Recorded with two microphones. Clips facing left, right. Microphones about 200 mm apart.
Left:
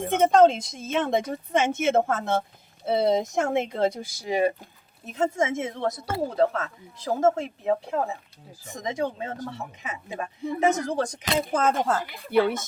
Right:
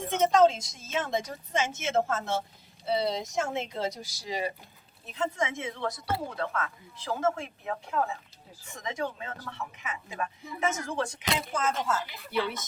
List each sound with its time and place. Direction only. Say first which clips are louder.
0.0 s speech: left 4 dB; 55° left (ahead or behind)